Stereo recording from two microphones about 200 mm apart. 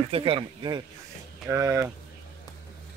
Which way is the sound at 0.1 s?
25° right (ahead or behind).